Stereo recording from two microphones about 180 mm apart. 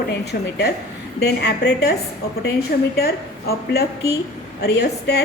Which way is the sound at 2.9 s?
60° left (ahead or behind).